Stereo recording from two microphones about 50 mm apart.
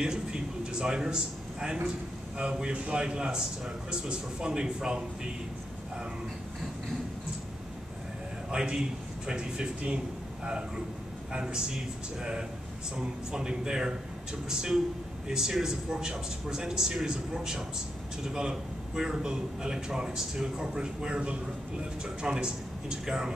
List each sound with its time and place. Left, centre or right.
0.0 s a sound: centre
2.3 s a man's voice: centre
8.5 s a man's voice: centre
15.2 s a man's voice: centre